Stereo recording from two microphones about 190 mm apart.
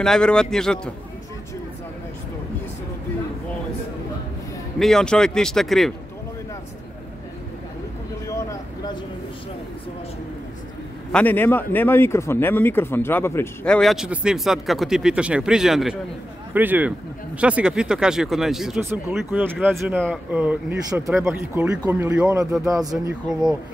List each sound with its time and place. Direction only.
0.0 s speech: 5° left (ahead or behind)
4.7 s speech: 5° left (ahead or behind)
8.3 s vehicle: 15° left (ahead or behind)
11.1 s a man's voice: 10° left (ahead or behind)
13.7 s speech: centre (ahead or behind); by 23.1 s 20° right (ahead or behind)